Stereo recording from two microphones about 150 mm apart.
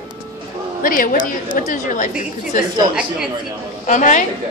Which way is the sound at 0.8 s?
70° left (ahead or behind).